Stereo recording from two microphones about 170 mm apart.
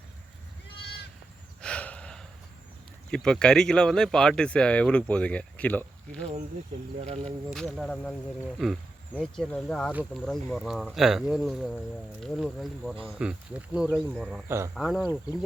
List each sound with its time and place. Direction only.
1.6 s gasp: 5° left (ahead or behind)
3.1 s speech: 5° left (ahead or behind)
7.0 s speech: 35° right (ahead or behind)
7.5 s speech: 5° left (ahead or behind)
9.9 s speech: 10° right (ahead or behind)
10.2 s speech: centre (ahead or behind)
14.4 s speech: 15° right (ahead or behind)
14.8 s speech: centre (ahead or behind)